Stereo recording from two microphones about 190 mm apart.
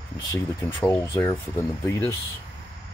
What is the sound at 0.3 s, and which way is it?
Speech, 10° left (ahead or behind).